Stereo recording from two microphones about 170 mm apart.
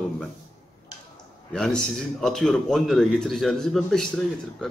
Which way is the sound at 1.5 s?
5° left (ahead or behind).